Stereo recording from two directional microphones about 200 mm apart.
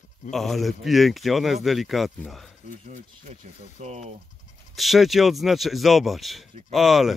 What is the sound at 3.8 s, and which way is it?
Speech, 35° right (ahead or behind).